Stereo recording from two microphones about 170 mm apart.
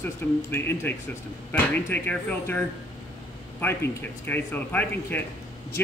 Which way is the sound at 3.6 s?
10° left (ahead or behind).